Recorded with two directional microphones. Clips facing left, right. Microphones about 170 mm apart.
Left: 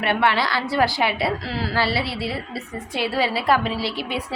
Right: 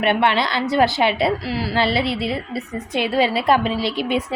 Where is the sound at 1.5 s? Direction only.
10° right (ahead or behind).